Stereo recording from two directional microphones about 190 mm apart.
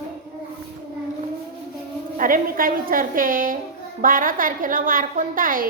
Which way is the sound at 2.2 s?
45° right (ahead or behind).